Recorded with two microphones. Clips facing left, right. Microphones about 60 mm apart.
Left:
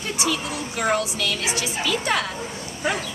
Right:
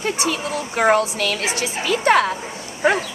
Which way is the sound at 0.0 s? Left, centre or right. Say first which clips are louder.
Right 3 dB; right.